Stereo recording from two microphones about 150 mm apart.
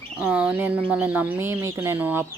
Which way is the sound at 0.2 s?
5° right (ahead or behind).